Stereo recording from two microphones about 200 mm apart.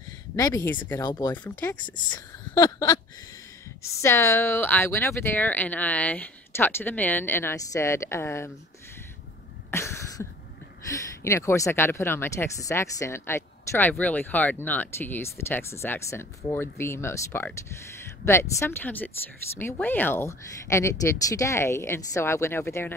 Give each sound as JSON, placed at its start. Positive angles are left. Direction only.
{"t": 0.4, "sound": "speech", "side_deg": 15}
{"t": 1.5, "sound": "speech", "side_deg": 10}
{"t": 9.7, "sound": "a sound", "side_deg": 15}
{"t": 10.9, "sound": "speech", "side_deg": 15}